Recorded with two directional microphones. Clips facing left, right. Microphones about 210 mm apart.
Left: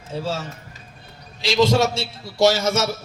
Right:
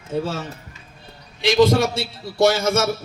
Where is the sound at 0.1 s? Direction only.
55° right (ahead or behind).